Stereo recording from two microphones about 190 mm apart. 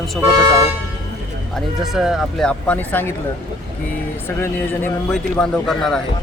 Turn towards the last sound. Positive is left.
turn(degrees=0)  # may be behind; listen again after turning